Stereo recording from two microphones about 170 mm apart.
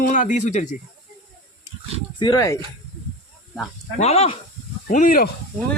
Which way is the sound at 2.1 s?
25° left (ahead or behind).